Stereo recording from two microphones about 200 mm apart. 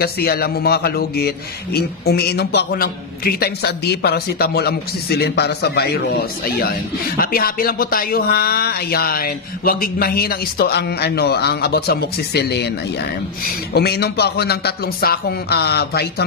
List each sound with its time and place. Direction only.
0.0 s a man's voice: 50° left (ahead or behind)